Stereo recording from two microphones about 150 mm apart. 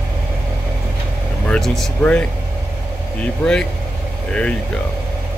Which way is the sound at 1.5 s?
5° left (ahead or behind).